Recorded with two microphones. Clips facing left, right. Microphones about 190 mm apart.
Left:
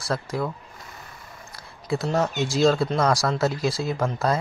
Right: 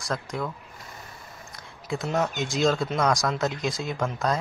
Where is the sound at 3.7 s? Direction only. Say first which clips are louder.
Left 4 dB; 35° left (ahead or behind).